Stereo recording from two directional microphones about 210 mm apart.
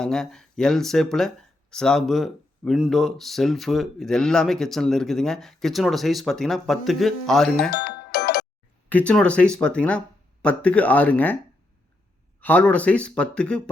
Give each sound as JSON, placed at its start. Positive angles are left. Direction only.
{"t": 0.0, "sound": "speech", "side_deg": 0}
{"t": 7.7, "sound": "music", "side_deg": 55}
{"t": 8.9, "sound": "speech", "side_deg": 5}
{"t": 12.4, "sound": "speech", "side_deg": 5}